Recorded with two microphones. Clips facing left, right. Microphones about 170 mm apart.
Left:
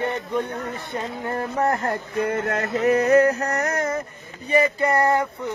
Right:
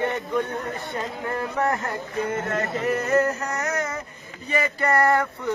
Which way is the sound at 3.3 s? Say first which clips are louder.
Left 3 dB; 60° left (ahead or behind).